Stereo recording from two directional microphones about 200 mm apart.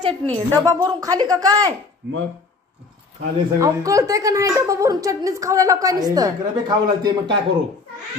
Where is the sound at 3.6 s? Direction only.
15° right (ahead or behind).